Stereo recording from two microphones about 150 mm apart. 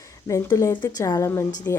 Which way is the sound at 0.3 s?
20° left (ahead or behind).